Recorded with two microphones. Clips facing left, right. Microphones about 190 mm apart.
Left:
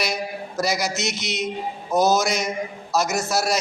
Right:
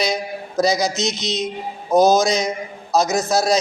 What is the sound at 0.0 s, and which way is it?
Mantra, 20° right (ahead or behind).